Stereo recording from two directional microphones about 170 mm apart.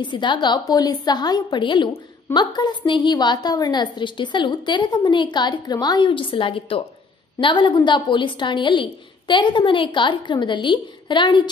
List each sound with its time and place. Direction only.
0.0 s a woman's voice: 30° left (ahead or behind)